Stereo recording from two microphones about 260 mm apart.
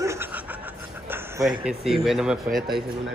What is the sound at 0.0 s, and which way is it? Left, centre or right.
Snicker, centre.